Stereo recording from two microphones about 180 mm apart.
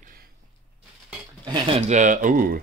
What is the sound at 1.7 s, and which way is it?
Speech, 40° right (ahead or behind).